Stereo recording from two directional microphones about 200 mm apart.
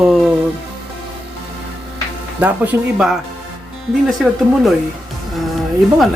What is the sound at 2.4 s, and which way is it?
Speech, 10° right (ahead or behind).